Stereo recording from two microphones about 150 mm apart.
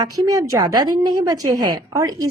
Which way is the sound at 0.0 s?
25° right (ahead or behind).